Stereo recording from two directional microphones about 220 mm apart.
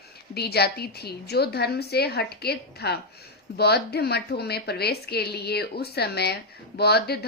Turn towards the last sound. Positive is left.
turn(degrees=45)  # may be behind; listen again after turning